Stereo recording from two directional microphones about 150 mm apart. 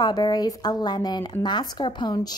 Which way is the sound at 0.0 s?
30° left (ahead or behind).